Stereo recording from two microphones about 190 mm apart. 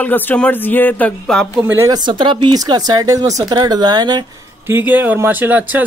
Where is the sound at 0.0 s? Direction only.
10° left (ahead or behind).